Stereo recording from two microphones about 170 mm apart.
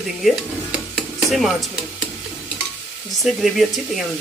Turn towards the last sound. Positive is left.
turn(degrees=0)  # may be behind; listen again after turning